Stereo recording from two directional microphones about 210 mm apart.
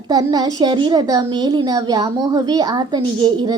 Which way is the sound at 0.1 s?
20° right (ahead or behind).